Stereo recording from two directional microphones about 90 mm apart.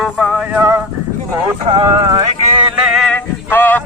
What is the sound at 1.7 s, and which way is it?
Speech, 70° right (ahead or behind).